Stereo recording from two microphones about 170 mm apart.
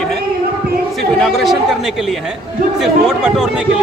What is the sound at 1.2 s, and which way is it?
Speech, centre (ahead or behind).